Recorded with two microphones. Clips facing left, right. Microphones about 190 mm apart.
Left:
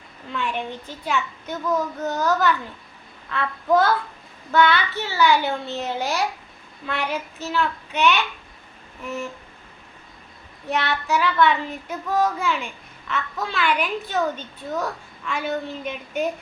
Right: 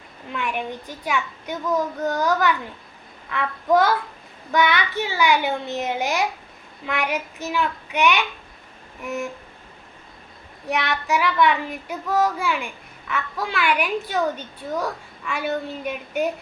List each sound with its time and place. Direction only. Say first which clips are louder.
0.3 s a child's voice: even; 10° right (ahead or behind)
10.7 s a child's voice: even; 15° right (ahead or behind)